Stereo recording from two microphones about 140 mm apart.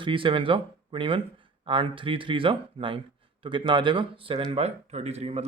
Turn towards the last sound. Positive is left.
turn(degrees=-50)  # may be behind; listen again after turning